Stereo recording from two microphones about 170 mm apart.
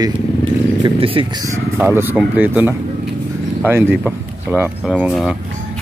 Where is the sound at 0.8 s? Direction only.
30° right (ahead or behind).